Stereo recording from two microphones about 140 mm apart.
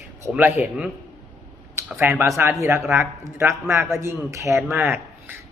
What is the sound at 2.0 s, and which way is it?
A man's voice, 15° right (ahead or behind).